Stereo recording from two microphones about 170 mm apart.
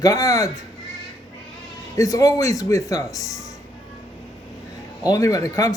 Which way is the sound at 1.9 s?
20° left (ahead or behind).